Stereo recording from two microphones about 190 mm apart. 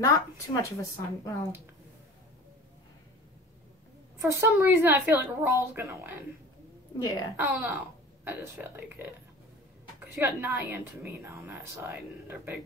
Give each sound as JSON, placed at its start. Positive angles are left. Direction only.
{"t": 0.0, "sound": "a woman's voice", "side_deg": 20}
{"t": 4.2, "sound": "a woman's voice", "side_deg": -15}
{"t": 7.0, "sound": "a woman's voice", "side_deg": 20}
{"t": 7.3, "sound": "a woman's voice", "side_deg": -10}
{"t": 10.1, "sound": "a woman's voice", "side_deg": -15}